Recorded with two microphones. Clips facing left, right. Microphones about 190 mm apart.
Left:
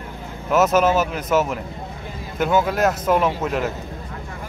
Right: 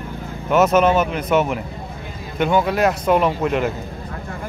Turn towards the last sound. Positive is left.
turn(degrees=0)  # may be behind; listen again after turning